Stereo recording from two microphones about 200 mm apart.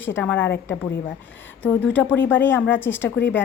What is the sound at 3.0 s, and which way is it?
Speech, 65° left (ahead or behind).